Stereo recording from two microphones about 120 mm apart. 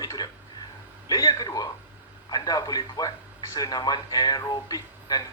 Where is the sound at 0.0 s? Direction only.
30° left (ahead or behind).